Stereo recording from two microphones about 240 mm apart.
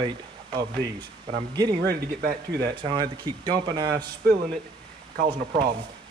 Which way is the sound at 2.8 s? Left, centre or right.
Centre.